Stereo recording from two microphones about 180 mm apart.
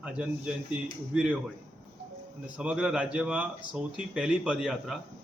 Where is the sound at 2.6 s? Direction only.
5° right (ahead or behind).